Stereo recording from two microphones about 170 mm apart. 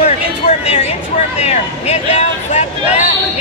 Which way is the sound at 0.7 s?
40° left (ahead or behind).